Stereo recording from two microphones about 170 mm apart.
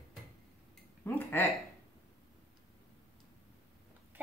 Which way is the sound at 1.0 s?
10° left (ahead or behind).